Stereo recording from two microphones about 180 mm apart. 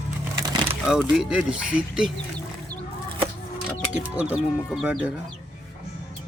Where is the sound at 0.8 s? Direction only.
5° right (ahead or behind).